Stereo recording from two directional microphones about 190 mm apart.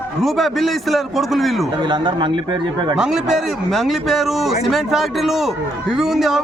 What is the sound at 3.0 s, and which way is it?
A man's voice, centre (ahead or behind).